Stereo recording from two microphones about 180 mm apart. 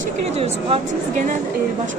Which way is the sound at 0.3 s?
35° right (ahead or behind).